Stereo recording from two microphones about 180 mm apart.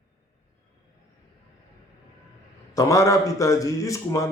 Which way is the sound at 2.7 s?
20° left (ahead or behind).